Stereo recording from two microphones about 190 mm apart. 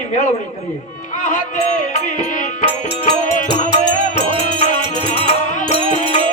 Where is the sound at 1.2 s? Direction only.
40° left (ahead or behind).